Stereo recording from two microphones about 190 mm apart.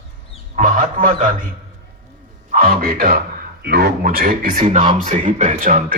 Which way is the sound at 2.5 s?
50° right (ahead or behind).